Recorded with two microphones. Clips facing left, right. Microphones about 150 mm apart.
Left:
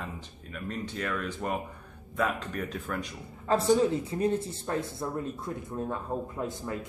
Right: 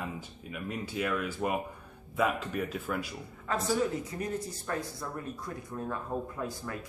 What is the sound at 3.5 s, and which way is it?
Speech, 30° left (ahead or behind).